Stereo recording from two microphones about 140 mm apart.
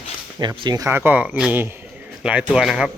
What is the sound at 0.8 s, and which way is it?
Speech, 15° right (ahead or behind).